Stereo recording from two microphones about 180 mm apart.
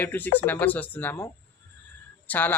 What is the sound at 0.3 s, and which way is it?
Speech, 10° left (ahead or behind).